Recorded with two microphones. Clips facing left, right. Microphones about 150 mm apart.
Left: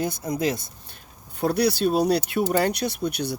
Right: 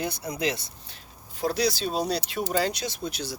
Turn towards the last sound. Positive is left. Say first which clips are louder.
# left 6 dB
turn(degrees=60)  # may be behind; listen again after turning